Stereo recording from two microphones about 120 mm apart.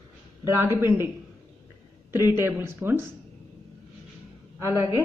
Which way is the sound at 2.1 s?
20° right (ahead or behind).